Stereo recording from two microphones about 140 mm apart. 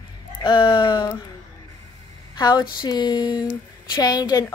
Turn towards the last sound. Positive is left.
turn(degrees=25)  # may be behind; listen again after turning